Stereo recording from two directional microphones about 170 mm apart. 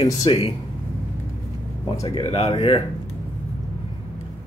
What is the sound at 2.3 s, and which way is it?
Speech, 35° left (ahead or behind).